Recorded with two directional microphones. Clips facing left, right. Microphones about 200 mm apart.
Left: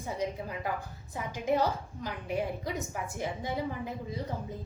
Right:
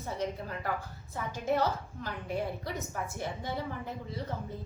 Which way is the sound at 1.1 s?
15° left (ahead or behind).